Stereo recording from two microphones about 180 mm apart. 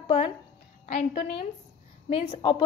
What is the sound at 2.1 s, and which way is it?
Speech, 30° left (ahead or behind).